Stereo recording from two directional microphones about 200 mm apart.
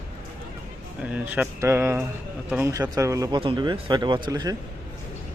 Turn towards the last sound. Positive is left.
turn(degrees=-20)  # may be behind; listen again after turning